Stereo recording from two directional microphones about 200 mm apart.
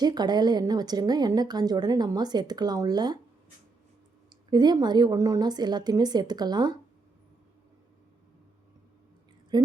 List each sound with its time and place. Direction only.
0.0 s a woman's voice: 20° right (ahead or behind)
4.3 s a woman's voice: 20° right (ahead or behind)